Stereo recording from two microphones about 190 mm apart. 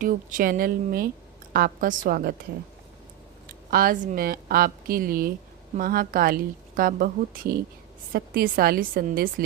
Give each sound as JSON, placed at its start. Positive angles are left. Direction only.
{"t": 0.0, "sound": "a woman's voice", "side_deg": -45}
{"t": 3.7, "sound": "a woman's voice", "side_deg": -50}